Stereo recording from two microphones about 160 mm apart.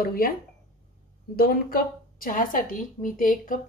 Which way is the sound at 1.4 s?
65° left (ahead or behind).